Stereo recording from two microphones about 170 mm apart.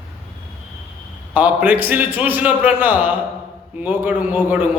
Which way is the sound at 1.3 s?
10° right (ahead or behind).